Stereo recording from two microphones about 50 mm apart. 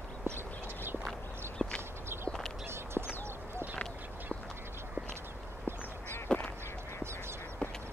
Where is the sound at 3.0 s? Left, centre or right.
Centre.